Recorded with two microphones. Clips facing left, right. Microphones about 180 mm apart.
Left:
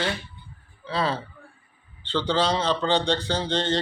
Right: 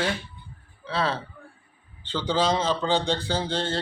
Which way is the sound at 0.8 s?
Centre (ahead or behind).